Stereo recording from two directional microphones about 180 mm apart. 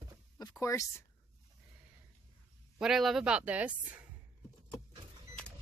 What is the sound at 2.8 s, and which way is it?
Speech, centre (ahead or behind).